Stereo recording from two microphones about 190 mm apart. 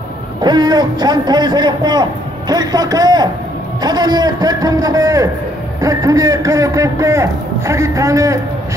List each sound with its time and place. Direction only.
0.4 s a man's voice: 20° right (ahead or behind)